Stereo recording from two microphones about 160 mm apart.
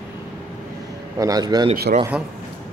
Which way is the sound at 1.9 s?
70° right (ahead or behind).